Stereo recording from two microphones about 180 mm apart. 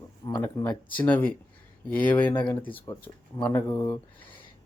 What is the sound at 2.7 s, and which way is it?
Speech, 30° left (ahead or behind).